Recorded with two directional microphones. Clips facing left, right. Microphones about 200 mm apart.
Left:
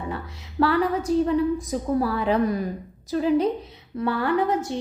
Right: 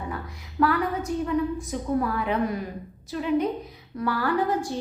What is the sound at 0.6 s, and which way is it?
A woman's voice, 30° left (ahead or behind).